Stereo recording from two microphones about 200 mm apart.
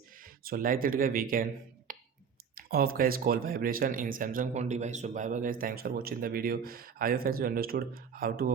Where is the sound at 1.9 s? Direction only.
45° right (ahead or behind).